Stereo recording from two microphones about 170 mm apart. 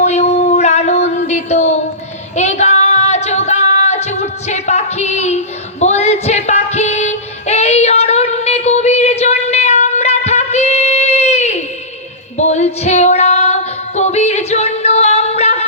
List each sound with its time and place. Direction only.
0.0 s music: 40° left (ahead or behind)
5.8 s female singing: 40° left (ahead or behind)
12.4 s music: 40° left (ahead or behind)